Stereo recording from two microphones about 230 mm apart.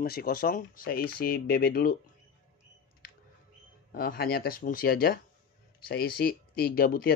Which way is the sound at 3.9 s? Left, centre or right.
Left.